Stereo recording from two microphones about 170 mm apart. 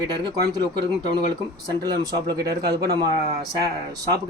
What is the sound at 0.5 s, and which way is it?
Speech, 25° right (ahead or behind).